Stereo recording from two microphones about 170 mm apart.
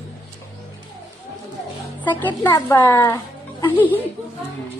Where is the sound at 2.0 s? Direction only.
10° left (ahead or behind).